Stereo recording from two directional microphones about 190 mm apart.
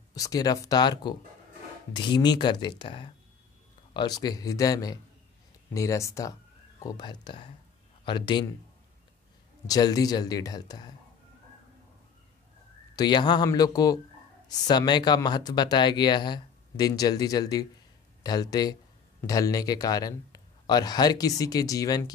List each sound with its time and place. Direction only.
0.1 s speech: 20° left (ahead or behind)
9.7 s speech: 20° left (ahead or behind)
12.9 s speech: 20° left (ahead or behind)